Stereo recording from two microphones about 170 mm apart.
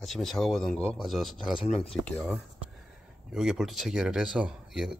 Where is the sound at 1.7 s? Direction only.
35° left (ahead or behind).